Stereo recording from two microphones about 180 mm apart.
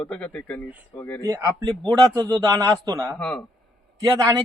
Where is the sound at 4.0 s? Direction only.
20° right (ahead or behind).